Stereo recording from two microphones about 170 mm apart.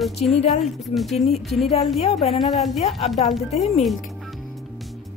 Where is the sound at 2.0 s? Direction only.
35° left (ahead or behind).